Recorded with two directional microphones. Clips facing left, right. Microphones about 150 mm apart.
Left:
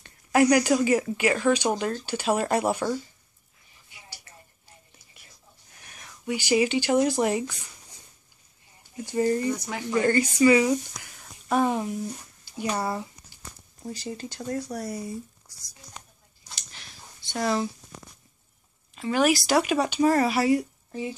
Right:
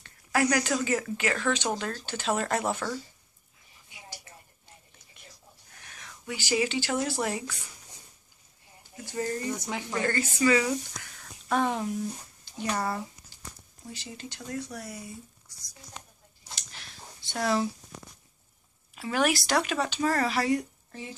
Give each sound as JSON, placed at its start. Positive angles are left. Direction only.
{"t": 0.0, "sound": "speech", "side_deg": 20}
{"t": 3.9, "sound": "a sound", "side_deg": -20}
{"t": 5.9, "sound": "speech", "side_deg": 15}
{"t": 9.0, "sound": "speech", "side_deg": 20}
{"t": 9.7, "sound": "speech", "side_deg": -15}
{"t": 10.0, "sound": "speech", "side_deg": 15}
{"t": 13.8, "sound": "speech", "side_deg": 40}
{"t": 16.5, "sound": "a sound", "side_deg": 0}
{"t": 18.9, "sound": "speech", "side_deg": 0}